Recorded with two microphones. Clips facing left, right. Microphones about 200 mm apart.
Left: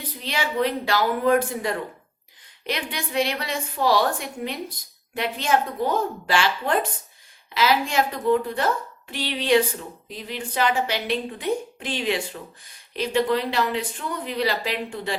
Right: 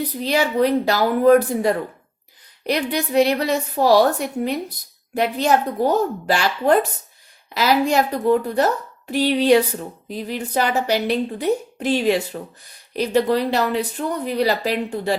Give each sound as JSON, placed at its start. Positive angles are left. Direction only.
{"t": 0.2, "sound": "a woman's voice", "side_deg": -40}